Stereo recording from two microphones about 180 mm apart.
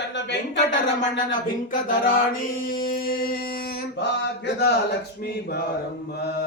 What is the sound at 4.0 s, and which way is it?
Speech, 70° left (ahead or behind).